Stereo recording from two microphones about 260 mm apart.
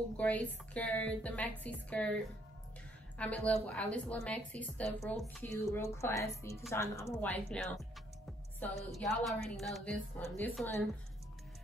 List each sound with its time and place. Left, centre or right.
0.2 s a woman's voice: centre
5.5 s a woman's voice: centre